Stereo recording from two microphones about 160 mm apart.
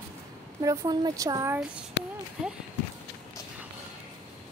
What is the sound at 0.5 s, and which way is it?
Speech, 25° right (ahead or behind).